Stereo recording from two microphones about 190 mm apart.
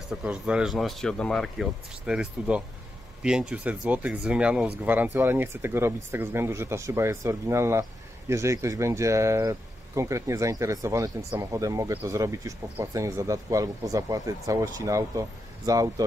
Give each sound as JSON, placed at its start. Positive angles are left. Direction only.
{"t": 0.1, "sound": "speech", "side_deg": -5}